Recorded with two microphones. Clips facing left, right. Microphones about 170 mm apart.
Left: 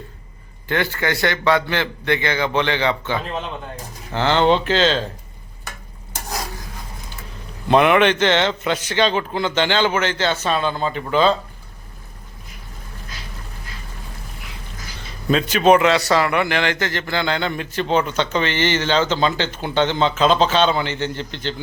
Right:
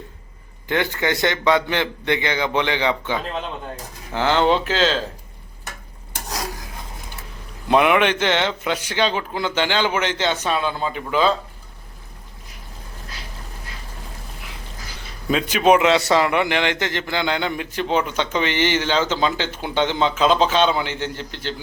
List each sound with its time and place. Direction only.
0.7 s a man's voice: 15° right (ahead or behind)
7.7 s a man's voice: 10° right (ahead or behind)
15.3 s a man's voice: 10° right (ahead or behind)